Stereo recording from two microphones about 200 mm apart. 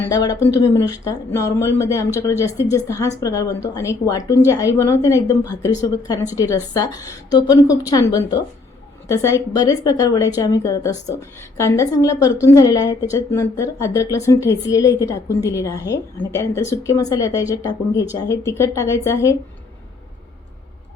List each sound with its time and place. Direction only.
0.1 s a woman's voice: 20° left (ahead or behind)